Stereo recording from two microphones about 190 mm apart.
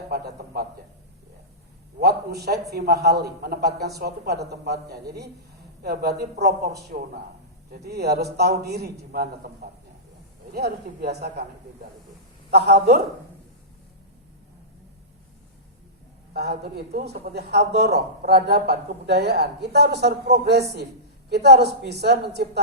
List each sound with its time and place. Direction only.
0.1 s speech: 55° right (ahead or behind)
2.0 s a man's voice: 55° right (ahead or behind)
10.5 s speech: 55° right (ahead or behind)
12.5 s speech: 60° right (ahead or behind)
16.3 s speech: 55° right (ahead or behind)